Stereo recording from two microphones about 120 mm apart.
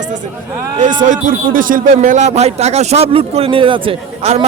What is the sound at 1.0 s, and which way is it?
Speech, 90° right.